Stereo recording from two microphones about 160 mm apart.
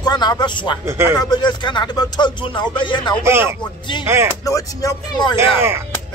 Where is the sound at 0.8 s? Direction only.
15° right (ahead or behind).